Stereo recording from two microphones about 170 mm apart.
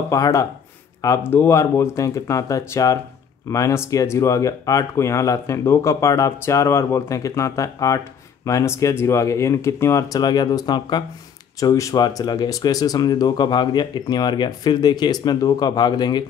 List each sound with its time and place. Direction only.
0.1 s speech: 20° left (ahead or behind)